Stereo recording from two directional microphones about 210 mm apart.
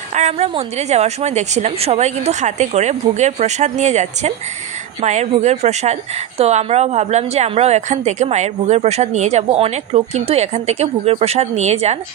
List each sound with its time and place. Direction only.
0.1 s a woman's voice: 30° right (ahead or behind)